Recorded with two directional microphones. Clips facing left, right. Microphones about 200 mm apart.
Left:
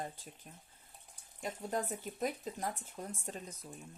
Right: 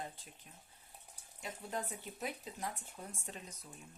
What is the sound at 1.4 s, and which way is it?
A woman's voice, 45° left (ahead or behind).